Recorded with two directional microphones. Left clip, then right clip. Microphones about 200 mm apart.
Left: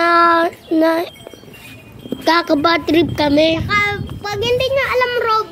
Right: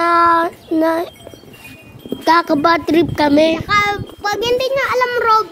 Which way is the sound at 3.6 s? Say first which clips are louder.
Right 2 dB; 60° right (ahead or behind).